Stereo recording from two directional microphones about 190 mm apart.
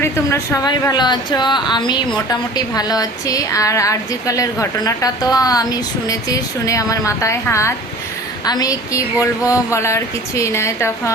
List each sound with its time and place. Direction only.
0.0 s speech: 15° left (ahead or behind)